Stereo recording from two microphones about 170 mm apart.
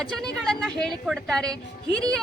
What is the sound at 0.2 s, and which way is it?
A woman's voice, 5° left (ahead or behind).